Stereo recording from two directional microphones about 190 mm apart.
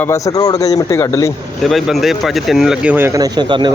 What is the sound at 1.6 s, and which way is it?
Speech, centre (ahead or behind).